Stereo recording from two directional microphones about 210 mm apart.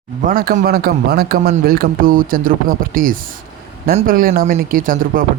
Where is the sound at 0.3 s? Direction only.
40° right (ahead or behind).